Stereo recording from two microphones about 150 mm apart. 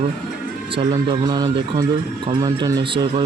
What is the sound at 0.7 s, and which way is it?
Speech, 30° right (ahead or behind).